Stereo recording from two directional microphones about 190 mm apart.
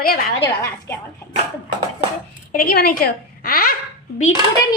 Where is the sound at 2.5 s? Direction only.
55° left (ahead or behind).